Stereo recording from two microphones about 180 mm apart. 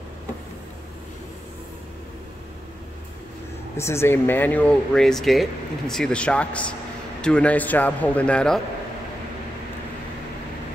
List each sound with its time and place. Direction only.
3.7 s speech: 15° left (ahead or behind)